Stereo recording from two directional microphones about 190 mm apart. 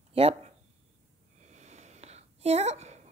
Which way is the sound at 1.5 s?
35° right (ahead or behind).